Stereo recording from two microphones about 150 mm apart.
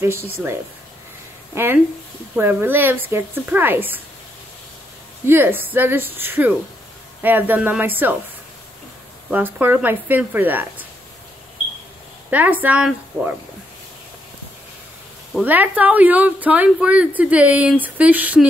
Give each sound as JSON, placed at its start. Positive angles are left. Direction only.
{"t": 0.0, "sound": "a woman's voice", "side_deg": -15}
{"t": 5.2, "sound": "a woman's voice", "side_deg": -15}
{"t": 9.3, "sound": "a woman's voice", "side_deg": -15}
{"t": 12.3, "sound": "a woman's voice", "side_deg": -10}
{"t": 15.4, "sound": "a woman's voice", "side_deg": -10}